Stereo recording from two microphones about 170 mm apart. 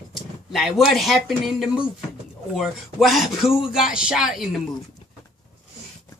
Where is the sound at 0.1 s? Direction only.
Centre (ahead or behind).